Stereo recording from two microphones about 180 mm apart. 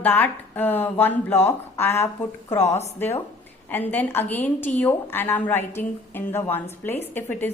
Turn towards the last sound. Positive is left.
turn(degrees=10)  # may be behind; listen again after turning